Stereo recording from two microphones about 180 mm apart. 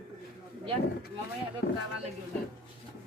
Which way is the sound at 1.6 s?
65° left (ahead or behind).